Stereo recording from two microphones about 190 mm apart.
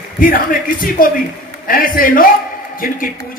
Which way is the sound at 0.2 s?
45° left (ahead or behind).